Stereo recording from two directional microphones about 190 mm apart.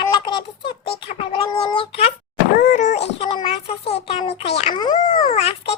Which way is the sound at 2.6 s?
40° left (ahead or behind).